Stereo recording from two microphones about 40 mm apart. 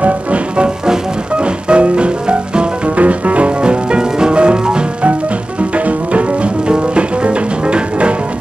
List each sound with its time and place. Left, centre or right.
0.0 s music: right
3.0 s music: right